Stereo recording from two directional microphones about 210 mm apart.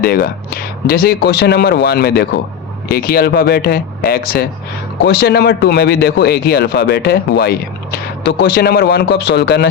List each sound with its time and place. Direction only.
0.0 s speech: 45° left (ahead or behind)